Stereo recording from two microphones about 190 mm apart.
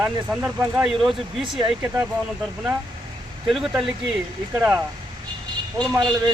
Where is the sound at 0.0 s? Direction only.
10° right (ahead or behind).